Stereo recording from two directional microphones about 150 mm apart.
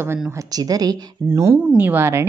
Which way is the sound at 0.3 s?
25° right (ahead or behind).